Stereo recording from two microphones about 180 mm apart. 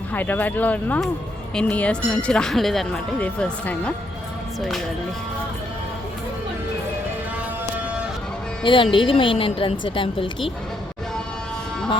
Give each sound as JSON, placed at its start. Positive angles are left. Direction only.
{"t": 0.1, "sound": "speech", "side_deg": 10}
{"t": 8.6, "sound": "speech", "side_deg": 30}